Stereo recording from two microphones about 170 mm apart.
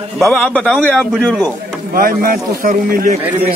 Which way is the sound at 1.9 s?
55° right (ahead or behind).